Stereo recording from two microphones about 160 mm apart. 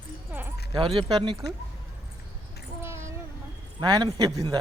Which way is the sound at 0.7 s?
30° right (ahead or behind).